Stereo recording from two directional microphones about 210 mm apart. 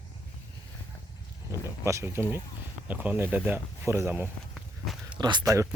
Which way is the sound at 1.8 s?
15° right (ahead or behind).